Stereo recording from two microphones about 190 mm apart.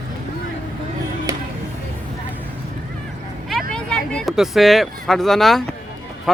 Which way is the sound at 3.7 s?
5° left (ahead or behind).